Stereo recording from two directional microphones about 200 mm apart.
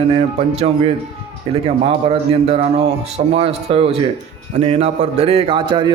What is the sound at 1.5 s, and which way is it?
Speech, 25° right (ahead or behind).